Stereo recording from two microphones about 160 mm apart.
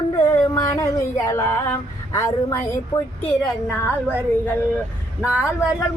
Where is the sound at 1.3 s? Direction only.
20° left (ahead or behind).